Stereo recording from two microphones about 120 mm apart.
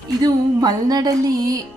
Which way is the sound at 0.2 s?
35° right (ahead or behind).